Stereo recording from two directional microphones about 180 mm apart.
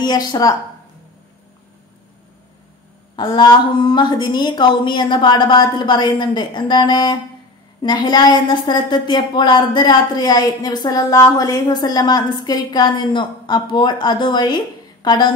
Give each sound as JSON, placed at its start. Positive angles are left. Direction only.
{"t": 0.0, "sound": "a woman's voice", "side_deg": 20}
{"t": 3.2, "sound": "a woman's voice", "side_deg": 25}